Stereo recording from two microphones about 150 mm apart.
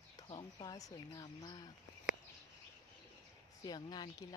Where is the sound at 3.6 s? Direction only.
25° left (ahead or behind).